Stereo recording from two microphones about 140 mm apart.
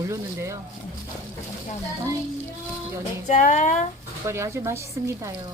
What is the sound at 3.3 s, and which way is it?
Speech, 60° left (ahead or behind).